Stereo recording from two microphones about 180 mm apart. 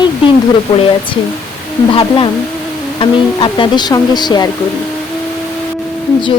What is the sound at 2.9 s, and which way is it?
Speech, 30° left (ahead or behind).